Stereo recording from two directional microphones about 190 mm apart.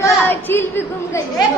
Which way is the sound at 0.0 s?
10° left (ahead or behind).